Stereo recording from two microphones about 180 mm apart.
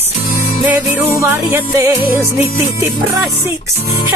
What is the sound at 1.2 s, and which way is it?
Music, 15° right (ahead or behind).